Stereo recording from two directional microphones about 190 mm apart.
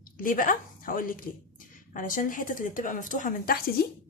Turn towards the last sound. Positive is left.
turn(degrees=50)  # may be behind; listen again after turning